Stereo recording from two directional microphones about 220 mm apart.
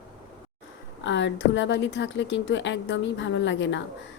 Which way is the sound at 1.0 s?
55° left (ahead or behind).